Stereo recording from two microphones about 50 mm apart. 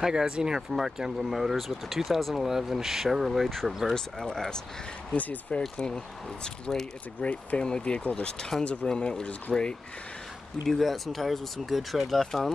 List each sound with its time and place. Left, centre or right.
0.0 s speech: centre
3.9 s speech: centre
5.1 s speech: left
5.6 s speech: centre
10.7 s speech: centre